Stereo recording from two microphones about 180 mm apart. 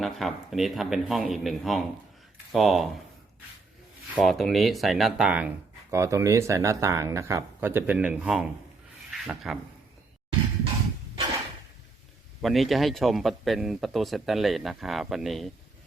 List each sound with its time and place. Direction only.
0.0 s speech: centre (ahead or behind)
4.1 s speech: centre (ahead or behind)
5.9 s speech: 15° right (ahead or behind)
12.4 s speech: centre (ahead or behind)